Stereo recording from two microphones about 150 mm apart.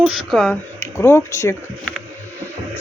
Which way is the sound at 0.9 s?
20° left (ahead or behind).